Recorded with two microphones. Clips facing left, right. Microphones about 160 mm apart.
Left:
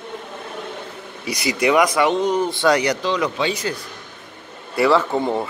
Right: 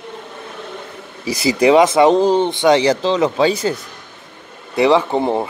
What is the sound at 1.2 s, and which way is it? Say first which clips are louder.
Speech: right 6 dB; 30° right (ahead or behind).